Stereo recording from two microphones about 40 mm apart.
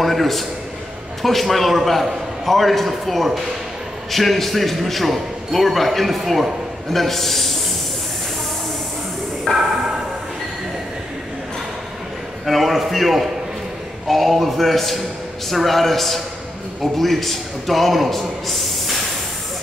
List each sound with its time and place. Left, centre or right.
0.0 s a sound: centre
1.2 s a man's voice: centre
9.5 s music: centre
12.4 s a man's voice: centre